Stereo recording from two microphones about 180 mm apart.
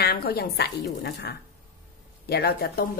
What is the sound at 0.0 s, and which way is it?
Speech, 60° left (ahead or behind).